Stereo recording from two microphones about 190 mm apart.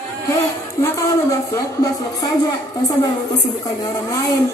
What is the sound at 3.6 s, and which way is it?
Speech, 20° left (ahead or behind).